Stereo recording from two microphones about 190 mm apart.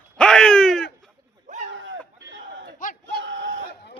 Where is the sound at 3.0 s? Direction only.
70° right (ahead or behind).